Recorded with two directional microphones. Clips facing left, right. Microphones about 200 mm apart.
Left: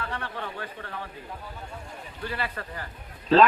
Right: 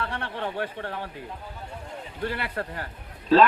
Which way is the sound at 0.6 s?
65° right (ahead or behind).